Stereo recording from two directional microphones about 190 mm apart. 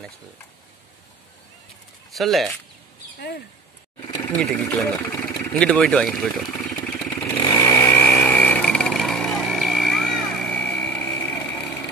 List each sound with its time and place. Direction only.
2.1 s speech: centre (ahead or behind)
3.2 s speech: 50° left (ahead or behind)
4.4 s speech: 5° left (ahead or behind)
5.5 s vehicle: 5° left (ahead or behind)
7.5 s chainsaw: 15° left (ahead or behind)